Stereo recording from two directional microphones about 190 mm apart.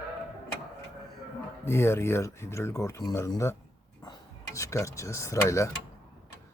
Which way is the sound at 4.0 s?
20° left (ahead or behind).